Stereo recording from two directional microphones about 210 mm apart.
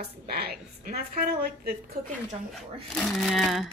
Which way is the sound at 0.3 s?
50° right (ahead or behind).